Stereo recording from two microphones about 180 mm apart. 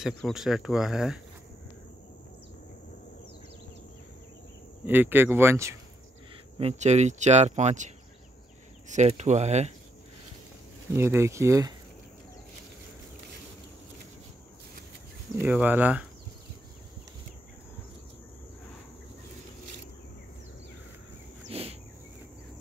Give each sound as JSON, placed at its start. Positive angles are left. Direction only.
{"t": 0.0, "sound": "speech", "side_deg": 0}
{"t": 4.8, "sound": "speech", "side_deg": -10}
{"t": 6.6, "sound": "speech", "side_deg": -40}
{"t": 10.9, "sound": "speech", "side_deg": -15}
{"t": 15.4, "sound": "speech", "side_deg": -10}
{"t": 21.5, "sound": "cricket", "side_deg": -35}